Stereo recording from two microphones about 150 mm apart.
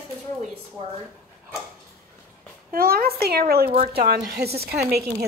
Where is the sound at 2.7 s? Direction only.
85° right.